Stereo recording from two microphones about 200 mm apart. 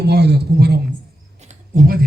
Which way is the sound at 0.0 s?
55° right (ahead or behind).